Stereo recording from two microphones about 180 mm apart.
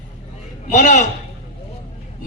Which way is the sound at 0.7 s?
40° left (ahead or behind).